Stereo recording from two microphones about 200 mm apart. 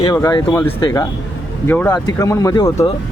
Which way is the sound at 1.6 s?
10° left (ahead or behind).